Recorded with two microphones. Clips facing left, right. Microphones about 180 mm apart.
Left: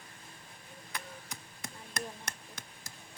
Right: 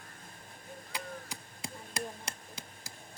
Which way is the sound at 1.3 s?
30° right (ahead or behind).